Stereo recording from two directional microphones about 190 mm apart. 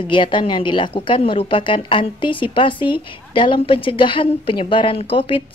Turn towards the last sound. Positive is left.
turn(degrees=30)  # may be behind; listen again after turning